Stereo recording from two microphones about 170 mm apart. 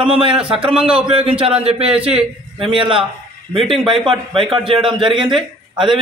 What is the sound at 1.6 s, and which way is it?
A man's voice, 35° right (ahead or behind).